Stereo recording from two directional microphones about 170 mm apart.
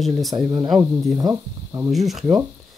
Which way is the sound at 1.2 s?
20° right (ahead or behind).